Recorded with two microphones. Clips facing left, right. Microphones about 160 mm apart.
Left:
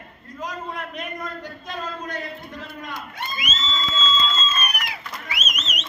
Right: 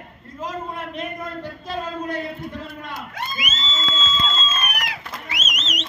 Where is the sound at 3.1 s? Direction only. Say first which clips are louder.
Right 3 dB; 90° right.